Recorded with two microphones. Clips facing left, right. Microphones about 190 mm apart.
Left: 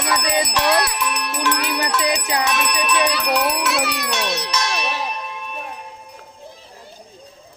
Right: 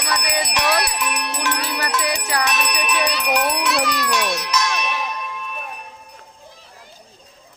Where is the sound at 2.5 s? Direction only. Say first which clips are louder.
Left 2 dB; 15° right (ahead or behind).